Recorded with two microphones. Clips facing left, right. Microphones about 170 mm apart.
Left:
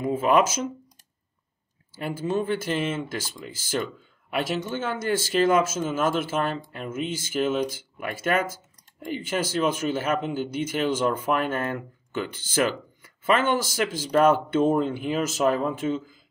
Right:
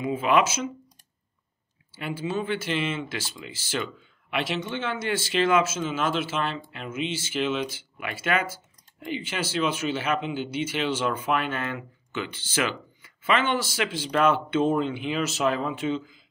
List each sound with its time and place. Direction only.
0.0 s speech: 45° left (ahead or behind)
2.0 s speech: 45° left (ahead or behind)